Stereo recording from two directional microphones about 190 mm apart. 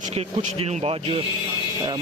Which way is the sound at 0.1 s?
35° right (ahead or behind).